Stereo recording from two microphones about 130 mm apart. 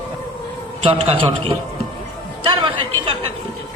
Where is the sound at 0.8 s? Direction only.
50° right (ahead or behind).